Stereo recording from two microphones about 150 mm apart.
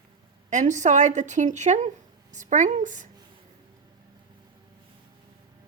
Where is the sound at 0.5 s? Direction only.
55° right (ahead or behind).